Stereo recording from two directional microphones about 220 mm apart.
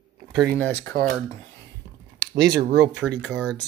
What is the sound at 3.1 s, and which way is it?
Speech, 50° right (ahead or behind).